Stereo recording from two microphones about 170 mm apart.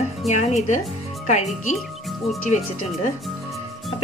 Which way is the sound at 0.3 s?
45° left (ahead or behind).